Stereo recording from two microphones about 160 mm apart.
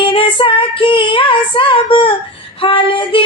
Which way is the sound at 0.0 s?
30° left (ahead or behind).